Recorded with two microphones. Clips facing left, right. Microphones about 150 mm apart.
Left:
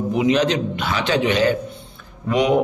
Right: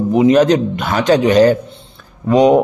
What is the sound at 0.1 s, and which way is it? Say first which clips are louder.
A man's voice: right 8 dB; 45° right (ahead or behind).